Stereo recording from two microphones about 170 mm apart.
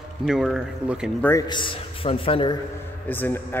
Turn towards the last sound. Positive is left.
turn(degrees=10)  # may be behind; listen again after turning